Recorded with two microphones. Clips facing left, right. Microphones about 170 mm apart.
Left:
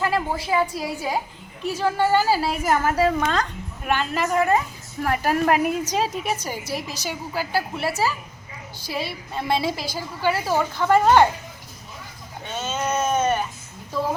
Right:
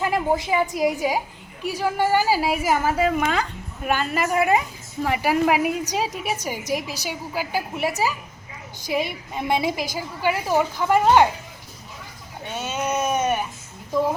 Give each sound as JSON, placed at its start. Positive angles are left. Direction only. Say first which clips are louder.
{"t": 0.0, "sound": "a woman's voice", "louder": "right 2 dB", "side_deg": -20}
{"t": 12.5, "sound": "sheep", "louder": "even", "side_deg": -15}
{"t": 13.9, "sound": "a woman's voice", "louder": "right 4 dB", "side_deg": -15}